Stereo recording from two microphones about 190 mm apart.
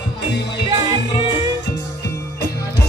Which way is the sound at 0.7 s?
20° right (ahead or behind).